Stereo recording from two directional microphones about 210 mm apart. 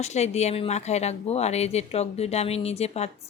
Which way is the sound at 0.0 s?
30° left (ahead or behind).